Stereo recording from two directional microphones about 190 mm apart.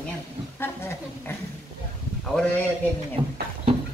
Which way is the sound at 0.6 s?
10° left (ahead or behind).